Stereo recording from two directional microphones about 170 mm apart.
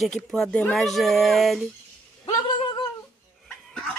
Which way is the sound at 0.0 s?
Centre (ahead or behind).